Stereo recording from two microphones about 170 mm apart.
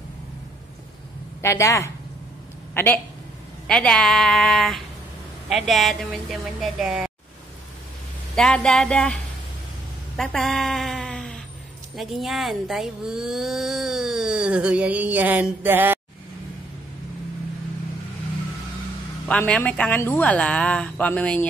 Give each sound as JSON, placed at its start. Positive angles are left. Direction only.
{"t": 1.4, "sound": "speech", "side_deg": 15}
{"t": 8.4, "sound": "speech", "side_deg": 5}
{"t": 10.1, "sound": "bleat", "side_deg": 0}
{"t": 11.9, "sound": "speech", "side_deg": 0}
{"t": 19.2, "sound": "speech", "side_deg": 5}